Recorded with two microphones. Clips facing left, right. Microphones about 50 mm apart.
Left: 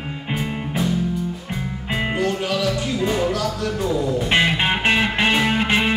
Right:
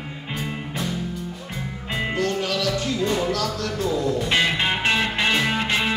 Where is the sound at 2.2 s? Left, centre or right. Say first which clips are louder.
Left 1 dB; centre.